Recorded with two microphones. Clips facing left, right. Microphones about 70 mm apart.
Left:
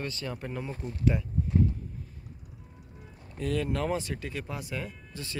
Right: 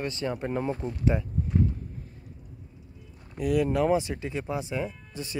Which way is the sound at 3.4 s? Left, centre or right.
Centre.